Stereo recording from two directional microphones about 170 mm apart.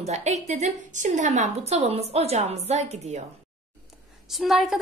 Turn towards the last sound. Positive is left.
turn(degrees=0)  # may be behind; listen again after turning